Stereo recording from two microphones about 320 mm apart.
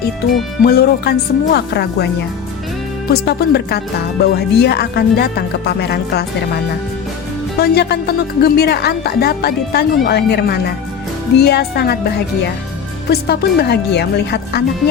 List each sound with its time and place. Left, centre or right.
0.6 s speech: left
3.1 s speech: left
7.6 s speech: left
13.1 s speech: left